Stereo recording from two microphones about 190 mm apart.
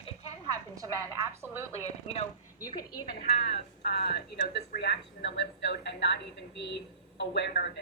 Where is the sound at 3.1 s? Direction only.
55° left (ahead or behind).